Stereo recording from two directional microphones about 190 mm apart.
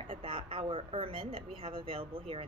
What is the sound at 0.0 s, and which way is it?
Speech, 30° right (ahead or behind).